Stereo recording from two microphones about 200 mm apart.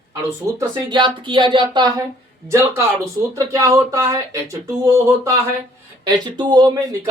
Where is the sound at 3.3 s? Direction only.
15° right (ahead or behind).